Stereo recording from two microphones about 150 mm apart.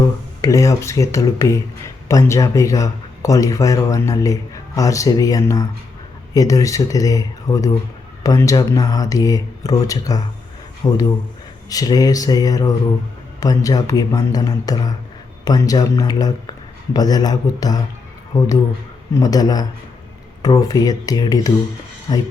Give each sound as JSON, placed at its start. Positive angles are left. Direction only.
{"t": 0.0, "sound": "speech", "side_deg": 20}